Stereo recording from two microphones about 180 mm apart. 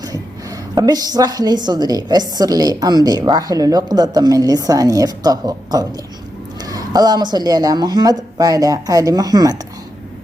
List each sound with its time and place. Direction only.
0.8 s a woman's voice: 20° right (ahead or behind)